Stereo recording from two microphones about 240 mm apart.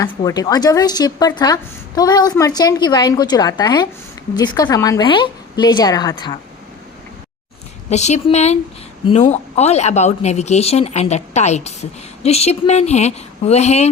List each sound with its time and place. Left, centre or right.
0.0 s a woman's voice: centre
7.9 s speech: left